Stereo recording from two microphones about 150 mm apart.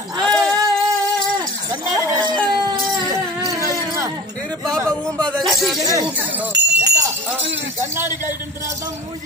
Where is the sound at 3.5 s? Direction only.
20° right (ahead or behind).